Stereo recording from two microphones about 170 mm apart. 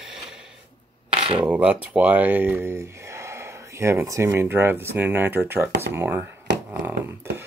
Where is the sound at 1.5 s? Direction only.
10° right (ahead or behind).